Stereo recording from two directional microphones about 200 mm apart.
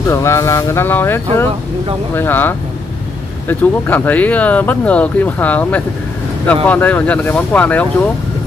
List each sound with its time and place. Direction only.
0.1 s speech: 15° left (ahead or behind)